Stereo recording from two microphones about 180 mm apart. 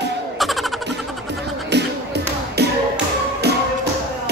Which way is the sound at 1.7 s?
65° right (ahead or behind).